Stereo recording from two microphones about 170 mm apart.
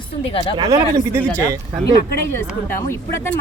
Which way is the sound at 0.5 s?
20° right (ahead or behind).